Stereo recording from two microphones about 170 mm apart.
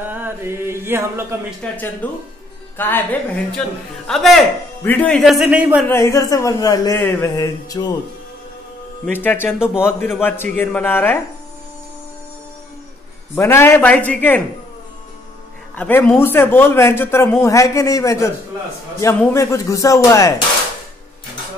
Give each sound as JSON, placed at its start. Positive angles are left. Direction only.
{"t": 0.0, "sound": "chant", "side_deg": -10}
{"t": 1.6, "sound": "a man's voice", "side_deg": 10}
{"t": 5.9, "sound": "speech", "side_deg": 15}
{"t": 9.1, "sound": "a man's voice", "side_deg": 10}
{"t": 13.3, "sound": "a man's voice", "side_deg": 15}
{"t": 15.7, "sound": "a man's voice", "side_deg": 10}